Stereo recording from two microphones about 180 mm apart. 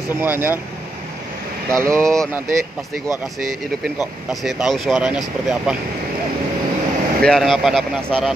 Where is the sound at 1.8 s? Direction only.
15° right (ahead or behind).